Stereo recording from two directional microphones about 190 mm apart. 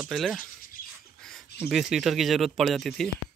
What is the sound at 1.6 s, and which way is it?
Speech, centre (ahead or behind).